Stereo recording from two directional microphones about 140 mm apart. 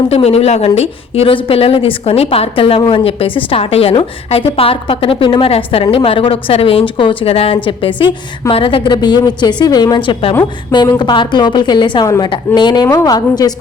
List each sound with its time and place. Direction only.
0.1 s a woman's voice: 50° left (ahead or behind); by 13.5 s 30° left (ahead or behind)